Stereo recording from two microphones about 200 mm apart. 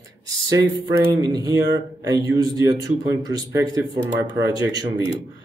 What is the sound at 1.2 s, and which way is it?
Speech, 20° right (ahead or behind).